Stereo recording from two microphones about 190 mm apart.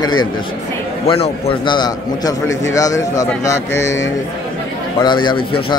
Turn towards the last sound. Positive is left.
turn(degrees=25)  # may be behind; listen again after turning